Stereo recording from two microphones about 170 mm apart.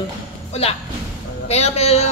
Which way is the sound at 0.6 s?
40° left (ahead or behind).